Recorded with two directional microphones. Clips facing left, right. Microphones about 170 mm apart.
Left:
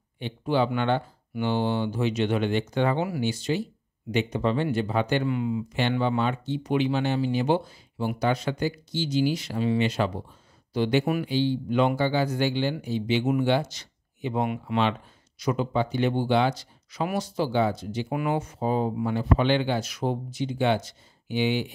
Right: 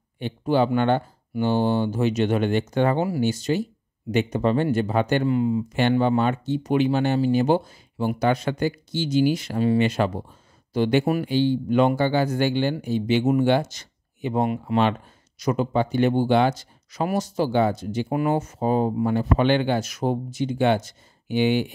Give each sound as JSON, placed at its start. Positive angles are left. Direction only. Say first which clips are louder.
{"t": 0.2, "sound": "speech", "louder": "right 4 dB", "side_deg": -45}